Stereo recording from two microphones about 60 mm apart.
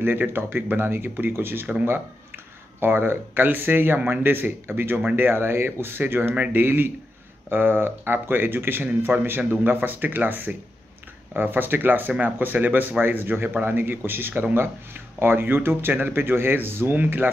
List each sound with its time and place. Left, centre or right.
0.0 s speech: right